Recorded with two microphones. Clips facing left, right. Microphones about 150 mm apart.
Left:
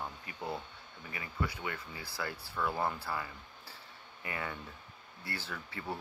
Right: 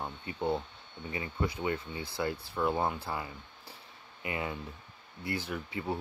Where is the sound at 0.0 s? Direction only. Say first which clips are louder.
Right 7 dB; 25° right (ahead or behind).